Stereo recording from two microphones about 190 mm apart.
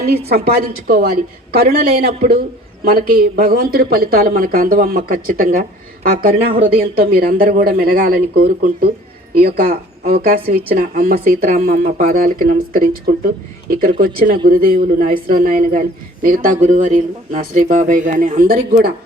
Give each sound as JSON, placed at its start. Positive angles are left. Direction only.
{"t": 0.3, "sound": "speech", "side_deg": -55}
{"t": 6.5, "sound": "speech", "side_deg": -30}
{"t": 6.9, "sound": "speech", "side_deg": -55}